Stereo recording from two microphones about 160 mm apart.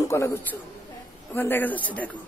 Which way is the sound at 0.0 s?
20° left (ahead or behind).